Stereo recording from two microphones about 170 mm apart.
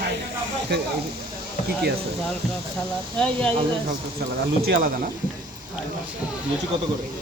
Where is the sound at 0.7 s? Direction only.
80° right.